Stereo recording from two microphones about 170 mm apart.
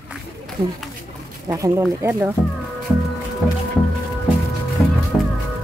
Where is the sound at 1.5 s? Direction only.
15° right (ahead or behind).